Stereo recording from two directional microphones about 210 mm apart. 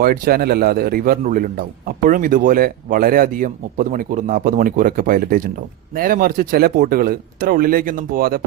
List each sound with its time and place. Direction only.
0.0 s a man's voice: 45° right (ahead or behind)